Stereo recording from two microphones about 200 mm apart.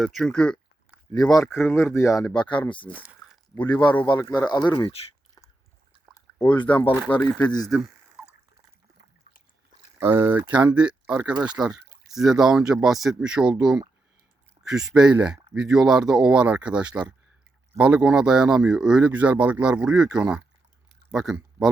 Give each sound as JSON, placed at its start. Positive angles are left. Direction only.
{"t": 0.0, "sound": "speech", "side_deg": 0}
{"t": 1.1, "sound": "speech", "side_deg": 20}
{"t": 4.0, "sound": "speech", "side_deg": 20}
{"t": 6.1, "sound": "a sound", "side_deg": 20}
{"t": 7.1, "sound": "speech", "side_deg": 10}
{"t": 7.6, "sound": "a sound", "side_deg": 0}
{"t": 10.0, "sound": "speech", "side_deg": -10}
{"t": 11.3, "sound": "speech", "side_deg": -20}
{"t": 11.6, "sound": "speech", "side_deg": -5}